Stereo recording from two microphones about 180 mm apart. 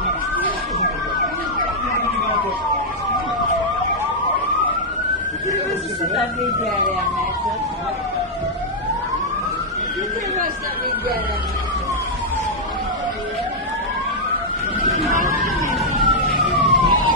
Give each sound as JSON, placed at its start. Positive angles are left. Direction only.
{"t": 16.3, "sound": "emergency vehicle", "side_deg": -30}